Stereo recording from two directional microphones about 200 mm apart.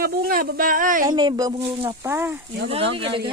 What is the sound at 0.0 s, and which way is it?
Speech, 50° right (ahead or behind).